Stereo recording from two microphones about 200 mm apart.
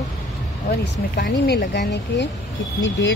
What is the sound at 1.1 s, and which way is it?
Speech, 55° left (ahead or behind).